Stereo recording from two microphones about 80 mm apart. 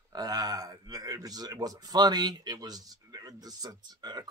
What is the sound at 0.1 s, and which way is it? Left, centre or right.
A man's voice, right.